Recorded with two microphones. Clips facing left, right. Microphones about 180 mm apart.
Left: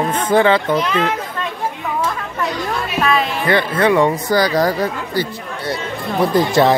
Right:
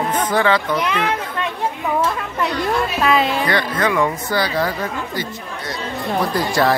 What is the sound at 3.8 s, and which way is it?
Speech, 30° left (ahead or behind).